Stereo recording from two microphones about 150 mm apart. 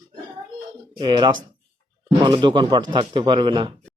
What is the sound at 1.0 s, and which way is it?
Speech, 30° right (ahead or behind).